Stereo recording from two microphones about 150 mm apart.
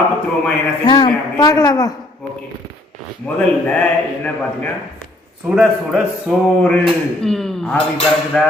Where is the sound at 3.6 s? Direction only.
10° left (ahead or behind).